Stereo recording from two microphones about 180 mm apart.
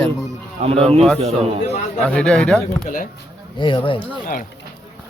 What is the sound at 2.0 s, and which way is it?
Speech, 5° left (ahead or behind).